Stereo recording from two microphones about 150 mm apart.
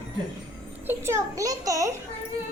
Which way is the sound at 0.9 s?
15° right (ahead or behind).